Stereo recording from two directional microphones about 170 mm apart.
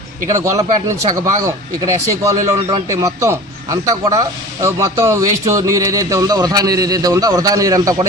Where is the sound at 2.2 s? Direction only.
15° right (ahead or behind).